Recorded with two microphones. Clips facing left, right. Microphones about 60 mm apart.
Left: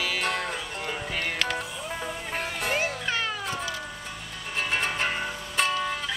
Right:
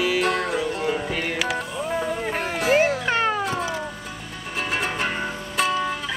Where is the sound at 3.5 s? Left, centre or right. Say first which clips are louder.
Right 6 dB; right.